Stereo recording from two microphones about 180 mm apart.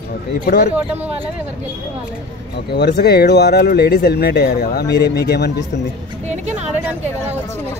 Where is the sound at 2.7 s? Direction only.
65° left (ahead or behind).